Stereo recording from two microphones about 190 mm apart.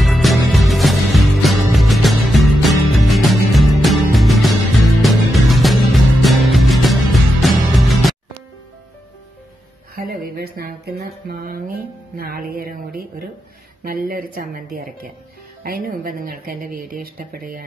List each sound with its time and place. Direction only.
0.0 s music: centre (ahead or behind)
10.3 s a sound: 55° right (ahead or behind)
12.2 s speech: 50° right (ahead or behind)